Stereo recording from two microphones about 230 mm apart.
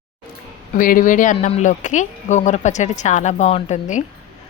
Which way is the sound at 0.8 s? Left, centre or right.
Left.